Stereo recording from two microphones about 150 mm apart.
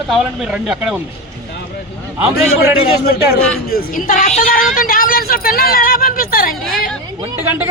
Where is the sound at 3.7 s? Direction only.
80° left.